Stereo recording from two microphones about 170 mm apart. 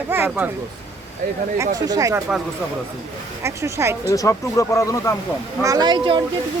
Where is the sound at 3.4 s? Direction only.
15° right (ahead or behind).